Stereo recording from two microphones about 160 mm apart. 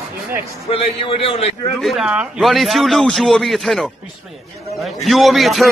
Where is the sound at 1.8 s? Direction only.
Centre (ahead or behind).